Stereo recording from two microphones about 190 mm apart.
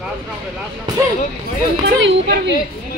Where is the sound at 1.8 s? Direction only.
70° right (ahead or behind).